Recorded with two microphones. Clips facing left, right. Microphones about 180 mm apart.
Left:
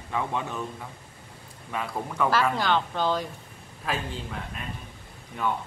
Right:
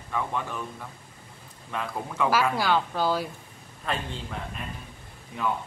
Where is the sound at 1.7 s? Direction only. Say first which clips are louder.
Left 1 dB; 5° left (ahead or behind).